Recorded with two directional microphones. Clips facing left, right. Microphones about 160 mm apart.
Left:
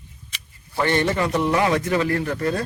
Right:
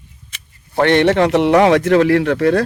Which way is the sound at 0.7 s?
75° right (ahead or behind).